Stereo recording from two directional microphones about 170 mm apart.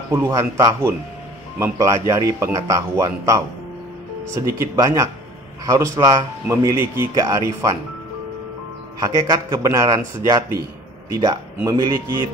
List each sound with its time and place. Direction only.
0.1 s a man's voice: 15° right (ahead or behind)
9.0 s a man's voice: 20° right (ahead or behind)